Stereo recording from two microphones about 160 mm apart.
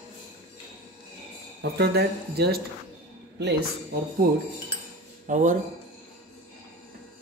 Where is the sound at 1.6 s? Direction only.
90° right.